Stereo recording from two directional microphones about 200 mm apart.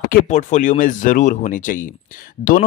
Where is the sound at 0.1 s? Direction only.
40° left (ahead or behind).